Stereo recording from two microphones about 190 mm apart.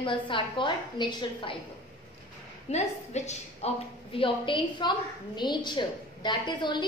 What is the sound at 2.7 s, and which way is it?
A woman's voice, 35° left (ahead or behind).